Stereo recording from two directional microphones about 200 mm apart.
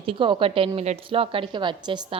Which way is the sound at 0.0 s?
25° right (ahead or behind).